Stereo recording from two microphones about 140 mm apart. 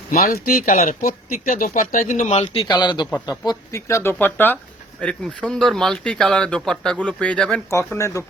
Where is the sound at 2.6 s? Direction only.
35° left (ahead or behind); by 7.6 s 10° left (ahead or behind).